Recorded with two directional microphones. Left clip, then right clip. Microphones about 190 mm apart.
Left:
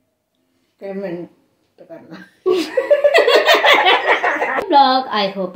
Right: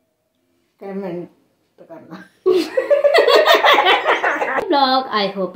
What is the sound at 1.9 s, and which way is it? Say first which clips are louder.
Speech: left 1 dB; 20° right (ahead or behind).